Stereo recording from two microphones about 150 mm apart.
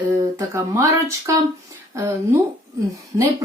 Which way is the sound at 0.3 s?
20° right (ahead or behind).